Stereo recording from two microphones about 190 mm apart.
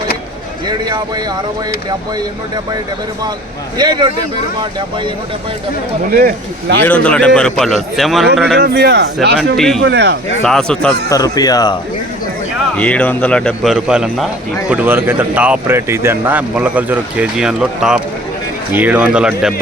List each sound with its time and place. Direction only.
0.7 s speech: 20° right (ahead or behind)
3.8 s speech: 25° right (ahead or behind)
6.1 s speech: 50° right (ahead or behind)
6.8 s speech: 5° left (ahead or behind)
8.5 s a man's voice: 60° right (ahead or behind)
9.6 s speech: centre (ahead or behind)
9.8 s a man's voice: 60° right (ahead or behind)
10.4 s speech: 5° left (ahead or behind)
11.1 s speech: 20° left (ahead or behind)
12.7 s speech: 5° left (ahead or behind)